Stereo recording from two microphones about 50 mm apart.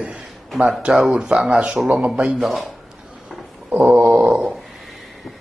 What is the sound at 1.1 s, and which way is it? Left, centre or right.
Speech, right.